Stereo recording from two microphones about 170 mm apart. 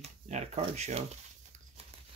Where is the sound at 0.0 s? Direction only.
40° right (ahead or behind).